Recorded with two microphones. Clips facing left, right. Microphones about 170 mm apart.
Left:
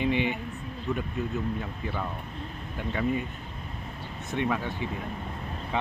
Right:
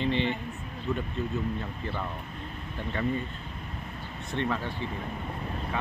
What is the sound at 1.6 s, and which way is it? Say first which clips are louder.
Speech: left 1 dB; 5° left (ahead or behind).